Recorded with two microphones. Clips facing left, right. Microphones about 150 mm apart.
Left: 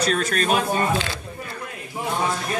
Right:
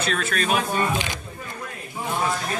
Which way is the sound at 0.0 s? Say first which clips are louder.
Left 3 dB; 40° left (ahead or behind).